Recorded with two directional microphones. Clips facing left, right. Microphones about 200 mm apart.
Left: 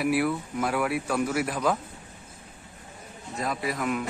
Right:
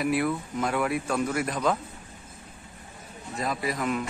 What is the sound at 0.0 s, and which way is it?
A man's voice, 5° left (ahead or behind).